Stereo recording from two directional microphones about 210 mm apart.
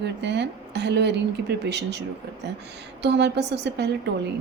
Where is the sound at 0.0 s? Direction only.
55° right (ahead or behind).